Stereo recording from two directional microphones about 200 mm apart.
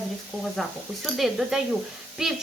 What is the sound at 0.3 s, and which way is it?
Speech, 5° left (ahead or behind).